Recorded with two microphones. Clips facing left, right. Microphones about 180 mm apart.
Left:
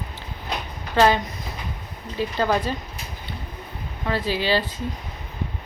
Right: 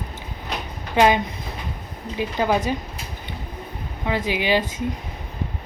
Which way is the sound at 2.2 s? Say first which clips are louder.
Right 1 dB; 15° right (ahead or behind).